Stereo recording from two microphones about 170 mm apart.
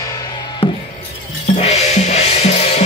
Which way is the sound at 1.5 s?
40° left (ahead or behind).